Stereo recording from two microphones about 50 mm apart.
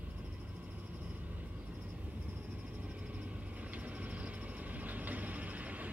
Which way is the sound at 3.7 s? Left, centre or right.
Right.